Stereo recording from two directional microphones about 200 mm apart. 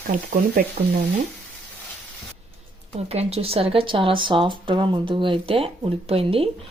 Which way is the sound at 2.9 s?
30° right (ahead or behind).